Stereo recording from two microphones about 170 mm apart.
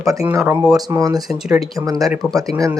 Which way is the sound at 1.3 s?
5° right (ahead or behind).